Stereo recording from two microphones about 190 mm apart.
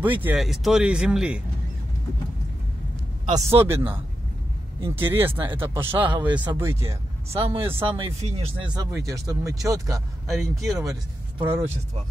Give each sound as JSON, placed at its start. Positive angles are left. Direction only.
{"t": 0.2, "sound": "speech", "side_deg": -5}
{"t": 3.3, "sound": "speech", "side_deg": -15}
{"t": 5.9, "sound": "speech", "side_deg": -25}
{"t": 6.2, "sound": "speech", "side_deg": -10}
{"t": 7.3, "sound": "speech", "side_deg": -30}
{"t": 10.5, "sound": "speech", "side_deg": 0}
{"t": 10.8, "sound": "speech", "side_deg": -20}